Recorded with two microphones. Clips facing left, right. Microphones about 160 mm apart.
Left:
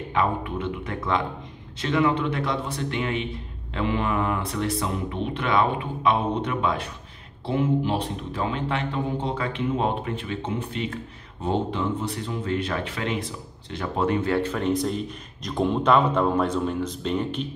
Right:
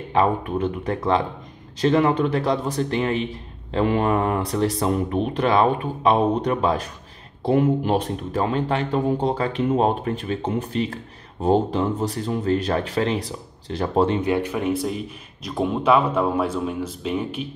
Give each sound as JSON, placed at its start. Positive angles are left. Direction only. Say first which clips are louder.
{"t": 0.1, "sound": "speech", "louder": "right 5 dB", "side_deg": -40}